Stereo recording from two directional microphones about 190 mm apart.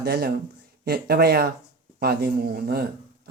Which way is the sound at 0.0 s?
55° right (ahead or behind).